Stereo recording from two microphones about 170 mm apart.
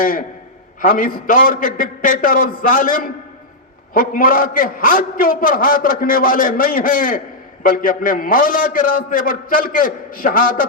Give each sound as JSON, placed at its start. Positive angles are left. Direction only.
{"t": 0.0, "sound": "a man's voice", "side_deg": 55}